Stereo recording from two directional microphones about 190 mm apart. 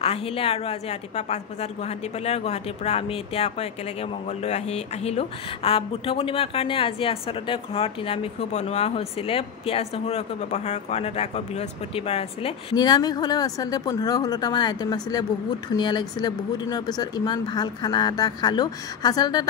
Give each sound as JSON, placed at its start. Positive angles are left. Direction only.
{"t": 0.0, "sound": "a woman's voice", "side_deg": 30}